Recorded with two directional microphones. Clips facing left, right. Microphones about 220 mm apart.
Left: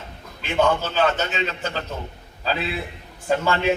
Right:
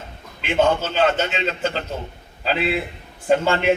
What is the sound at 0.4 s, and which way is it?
A man's voice, 25° right (ahead or behind).